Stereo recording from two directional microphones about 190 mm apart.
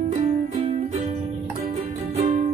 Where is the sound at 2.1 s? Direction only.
30° right (ahead or behind).